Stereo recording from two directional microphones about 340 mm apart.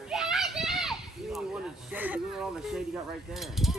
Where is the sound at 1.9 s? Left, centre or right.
Centre.